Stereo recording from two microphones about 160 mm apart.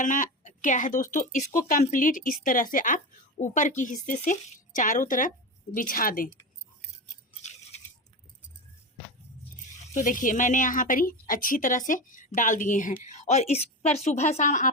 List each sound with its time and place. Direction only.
0.0 s speech: 55° left (ahead or behind)
9.9 s a woman's voice: 55° left (ahead or behind)